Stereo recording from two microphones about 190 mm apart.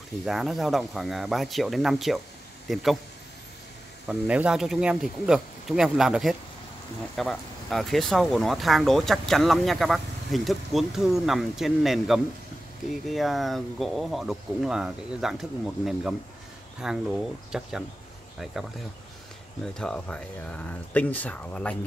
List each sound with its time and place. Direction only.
0.2 s speech: centre (ahead or behind)
4.1 s speech: 5° right (ahead or behind)
19.8 s speech: 5° left (ahead or behind)